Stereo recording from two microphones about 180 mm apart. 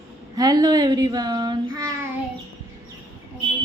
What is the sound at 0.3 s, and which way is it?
Speech, 20° right (ahead or behind).